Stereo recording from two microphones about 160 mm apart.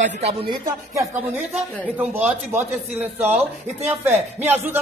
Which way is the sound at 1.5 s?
5° right (ahead or behind).